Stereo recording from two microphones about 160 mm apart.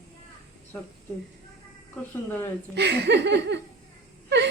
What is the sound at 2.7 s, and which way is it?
Speech, 90° right.